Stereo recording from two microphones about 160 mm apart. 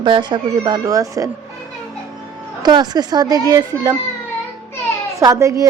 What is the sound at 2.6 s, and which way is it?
A child's voice, 25° right (ahead or behind).